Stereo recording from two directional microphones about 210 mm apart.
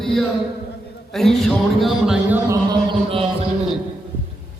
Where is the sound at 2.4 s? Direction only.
20° right (ahead or behind).